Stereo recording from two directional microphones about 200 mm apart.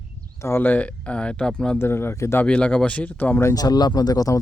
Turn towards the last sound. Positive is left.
turn(degrees=20)  # may be behind; listen again after turning